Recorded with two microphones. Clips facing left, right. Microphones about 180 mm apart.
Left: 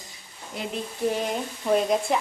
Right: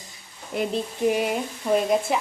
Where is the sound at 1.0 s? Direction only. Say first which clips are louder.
Right 3 dB; 10° right (ahead or behind).